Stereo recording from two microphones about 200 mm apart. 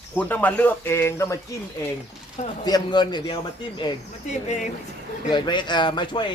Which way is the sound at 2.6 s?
20° left (ahead or behind).